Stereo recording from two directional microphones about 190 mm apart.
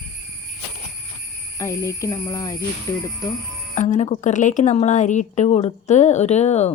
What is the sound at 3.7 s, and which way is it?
Speech, 40° left (ahead or behind).